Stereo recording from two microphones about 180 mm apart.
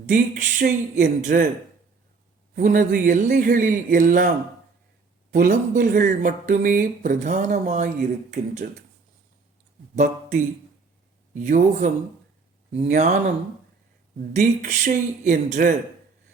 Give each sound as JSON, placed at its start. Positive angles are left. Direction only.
{"t": 0.0, "sound": "speech", "side_deg": -45}
{"t": 2.6, "sound": "speech", "side_deg": -45}
{"t": 5.3, "sound": "speech", "side_deg": -50}
{"t": 9.9, "sound": "speech", "side_deg": -45}
{"t": 12.9, "sound": "speech", "side_deg": -40}
{"t": 14.3, "sound": "speech", "side_deg": -45}